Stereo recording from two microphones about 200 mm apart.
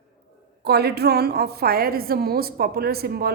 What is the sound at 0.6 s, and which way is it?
A woman's voice, 55° right (ahead or behind).